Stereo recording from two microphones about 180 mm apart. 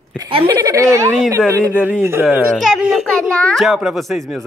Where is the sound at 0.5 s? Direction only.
20° right (ahead or behind).